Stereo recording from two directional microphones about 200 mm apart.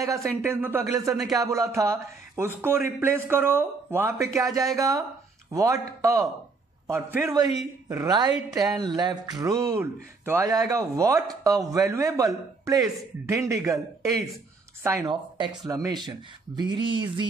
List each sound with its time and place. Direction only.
0.0 s a man's voice: 15° right (ahead or behind)
14.8 s speech: 15° right (ahead or behind)